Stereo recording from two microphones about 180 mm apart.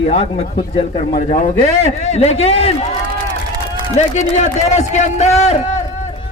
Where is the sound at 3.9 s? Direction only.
40° left (ahead or behind).